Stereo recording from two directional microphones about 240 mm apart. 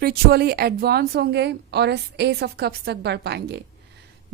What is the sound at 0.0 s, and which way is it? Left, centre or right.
A woman's voice, right.